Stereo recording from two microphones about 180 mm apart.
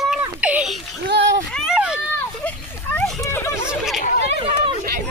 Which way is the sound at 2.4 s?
10° left (ahead or behind).